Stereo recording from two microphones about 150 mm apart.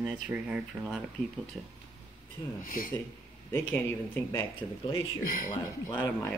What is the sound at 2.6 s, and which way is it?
Speech, 65° left (ahead or behind).